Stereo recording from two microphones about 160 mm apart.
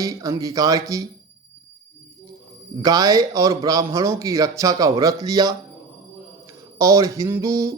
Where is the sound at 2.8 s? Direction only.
25° right (ahead or behind).